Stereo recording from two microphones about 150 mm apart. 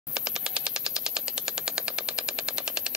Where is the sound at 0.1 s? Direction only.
5° right (ahead or behind).